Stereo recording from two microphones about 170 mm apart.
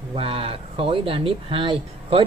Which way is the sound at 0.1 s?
35° right (ahead or behind).